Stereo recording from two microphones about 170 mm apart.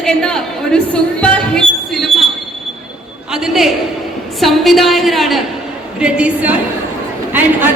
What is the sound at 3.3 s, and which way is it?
A woman's voice, centre (ahead or behind).